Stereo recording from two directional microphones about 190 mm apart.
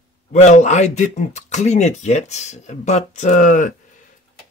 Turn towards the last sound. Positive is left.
turn(degrees=40)  # may be behind; listen again after turning